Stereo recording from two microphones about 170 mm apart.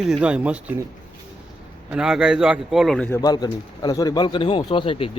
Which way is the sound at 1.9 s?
5° right (ahead or behind).